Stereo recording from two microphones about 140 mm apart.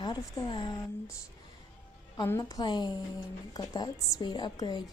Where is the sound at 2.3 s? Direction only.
25° left (ahead or behind).